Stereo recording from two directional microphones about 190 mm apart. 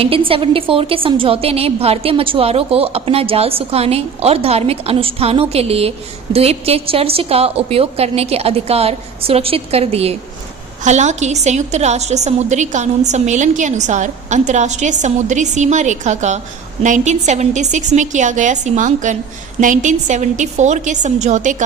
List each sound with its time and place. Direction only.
0.0 s a woman's voice: 30° right (ahead or behind)